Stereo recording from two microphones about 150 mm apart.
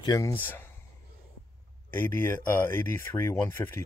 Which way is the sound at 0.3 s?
10° left (ahead or behind).